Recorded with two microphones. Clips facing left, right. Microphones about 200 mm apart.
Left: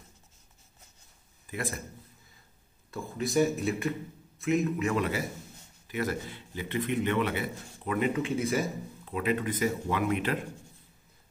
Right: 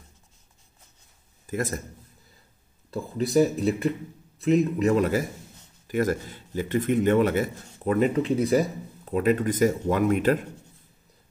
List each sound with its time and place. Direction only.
1.5 s a man's voice: 45° right (ahead or behind)
2.9 s a man's voice: 35° right (ahead or behind)